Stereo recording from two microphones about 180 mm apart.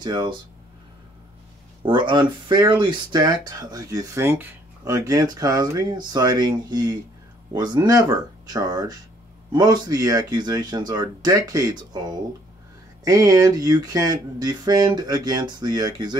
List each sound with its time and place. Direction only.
0.0 s speech: 25° right (ahead or behind)
1.9 s speech: 25° right (ahead or behind)